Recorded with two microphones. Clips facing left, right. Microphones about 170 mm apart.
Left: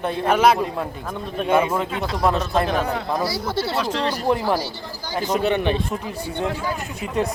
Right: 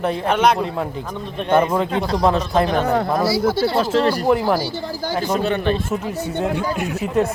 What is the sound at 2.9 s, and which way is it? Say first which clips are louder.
Speech: right 6 dB; 55° right (ahead or behind).